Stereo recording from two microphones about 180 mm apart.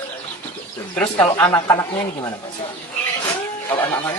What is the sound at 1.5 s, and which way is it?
Speech, 20° left (ahead or behind).